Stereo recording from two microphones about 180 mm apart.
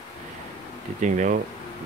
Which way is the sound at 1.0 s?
45° right (ahead or behind).